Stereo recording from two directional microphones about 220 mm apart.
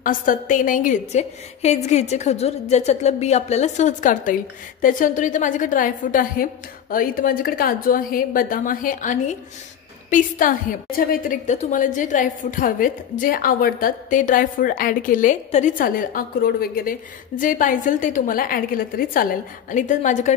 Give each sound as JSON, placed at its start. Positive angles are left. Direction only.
{"t": 0.0, "sound": "a woman's voice", "side_deg": 35}